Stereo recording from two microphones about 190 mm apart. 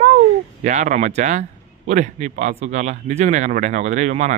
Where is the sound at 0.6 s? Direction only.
40° right (ahead or behind).